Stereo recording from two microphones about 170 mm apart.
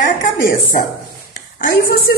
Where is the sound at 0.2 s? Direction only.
50° left (ahead or behind).